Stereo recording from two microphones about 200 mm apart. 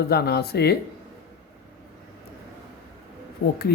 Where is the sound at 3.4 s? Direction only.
50° left (ahead or behind).